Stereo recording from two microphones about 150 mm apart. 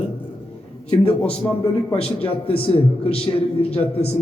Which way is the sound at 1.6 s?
40° left (ahead or behind).